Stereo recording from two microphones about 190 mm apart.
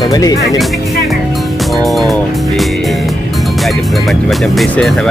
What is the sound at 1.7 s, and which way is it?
Music, centre (ahead or behind).